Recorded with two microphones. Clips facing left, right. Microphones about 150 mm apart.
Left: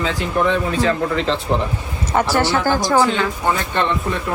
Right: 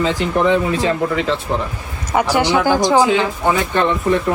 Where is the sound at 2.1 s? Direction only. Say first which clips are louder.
Right 2 dB; 15° right (ahead or behind).